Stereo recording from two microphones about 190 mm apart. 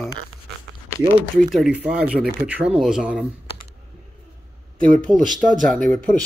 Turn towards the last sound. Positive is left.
turn(degrees=5)  # may be behind; listen again after turning